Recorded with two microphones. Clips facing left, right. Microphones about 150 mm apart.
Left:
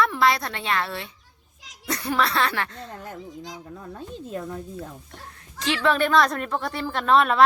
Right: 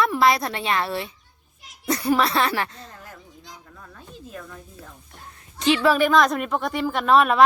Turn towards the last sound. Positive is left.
turn(degrees=-10)  # may be behind; listen again after turning